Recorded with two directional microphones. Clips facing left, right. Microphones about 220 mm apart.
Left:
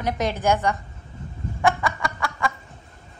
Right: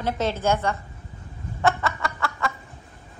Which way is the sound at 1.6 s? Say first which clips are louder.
Left 1 dB; 15° left (ahead or behind).